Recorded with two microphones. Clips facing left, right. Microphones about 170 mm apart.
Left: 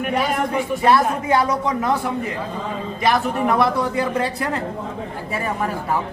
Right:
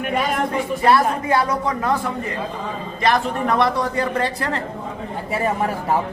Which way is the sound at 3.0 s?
10° left (ahead or behind).